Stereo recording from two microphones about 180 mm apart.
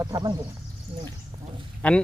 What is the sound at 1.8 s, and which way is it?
Speech, 5° left (ahead or behind).